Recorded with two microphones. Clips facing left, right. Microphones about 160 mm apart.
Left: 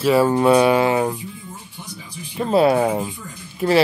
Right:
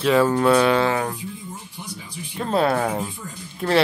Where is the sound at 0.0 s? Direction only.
10° left (ahead or behind).